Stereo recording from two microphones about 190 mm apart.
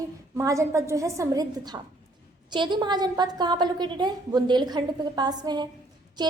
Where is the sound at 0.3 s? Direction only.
15° right (ahead or behind).